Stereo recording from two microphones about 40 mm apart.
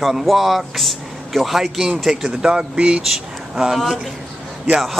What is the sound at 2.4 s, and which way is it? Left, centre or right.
Speech, right.